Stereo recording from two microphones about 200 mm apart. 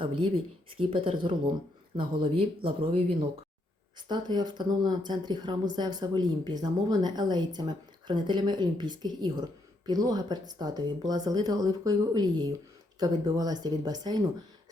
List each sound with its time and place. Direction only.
0.8 s speech: 25° right (ahead or behind)